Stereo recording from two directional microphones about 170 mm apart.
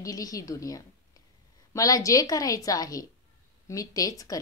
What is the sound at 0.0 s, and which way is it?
A woman's voice, 20° left (ahead or behind).